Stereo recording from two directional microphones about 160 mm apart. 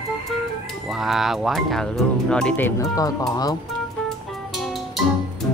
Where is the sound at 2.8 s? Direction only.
20° left (ahead or behind).